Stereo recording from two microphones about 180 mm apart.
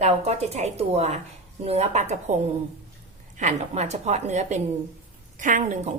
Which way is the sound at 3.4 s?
40° right (ahead or behind).